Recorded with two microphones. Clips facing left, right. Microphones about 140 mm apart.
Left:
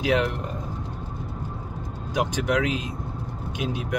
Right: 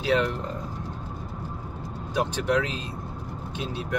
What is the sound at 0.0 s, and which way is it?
Speech, 15° left (ahead or behind).